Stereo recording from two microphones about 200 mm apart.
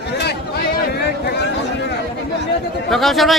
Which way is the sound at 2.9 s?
Centre (ahead or behind).